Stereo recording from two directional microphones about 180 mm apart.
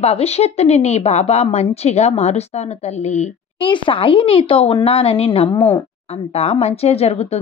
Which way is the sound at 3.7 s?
25° left (ahead or behind).